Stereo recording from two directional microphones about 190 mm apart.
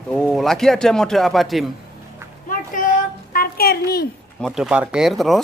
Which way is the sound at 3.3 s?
55° left (ahead or behind).